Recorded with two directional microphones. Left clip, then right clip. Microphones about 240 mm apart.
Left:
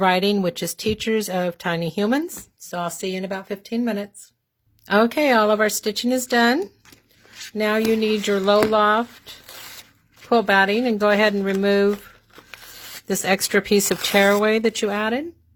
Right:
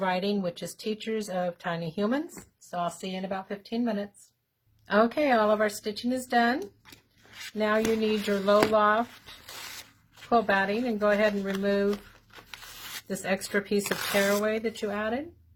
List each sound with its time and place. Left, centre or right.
0.0 s speech: left
7.6 s speech: left
9.5 s a sound: centre
10.2 s speech: left
12.5 s a sound: centre
13.1 s speech: left